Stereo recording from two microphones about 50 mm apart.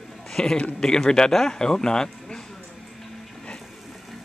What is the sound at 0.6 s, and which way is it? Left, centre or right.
Speech, left.